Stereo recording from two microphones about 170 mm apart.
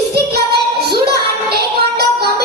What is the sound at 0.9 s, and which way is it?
Music, 70° right (ahead or behind).